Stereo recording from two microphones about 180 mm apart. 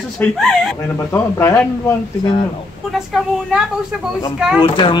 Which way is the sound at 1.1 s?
15° left (ahead or behind).